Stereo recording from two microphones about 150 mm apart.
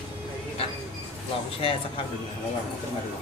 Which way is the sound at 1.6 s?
40° left (ahead or behind).